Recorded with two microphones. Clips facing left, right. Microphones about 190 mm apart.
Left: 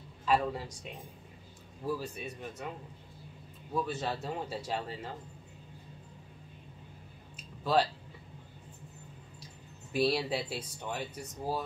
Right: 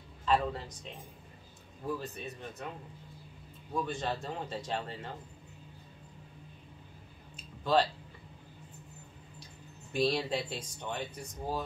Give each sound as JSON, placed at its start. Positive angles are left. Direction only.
{"t": 0.2, "sound": "speech", "side_deg": 5}
{"t": 3.7, "sound": "speech", "side_deg": 5}
{"t": 7.6, "sound": "speech", "side_deg": 5}
{"t": 9.9, "sound": "speech", "side_deg": 5}